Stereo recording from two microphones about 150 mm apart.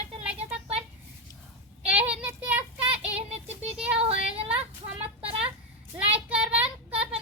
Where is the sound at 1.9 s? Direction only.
10° right (ahead or behind).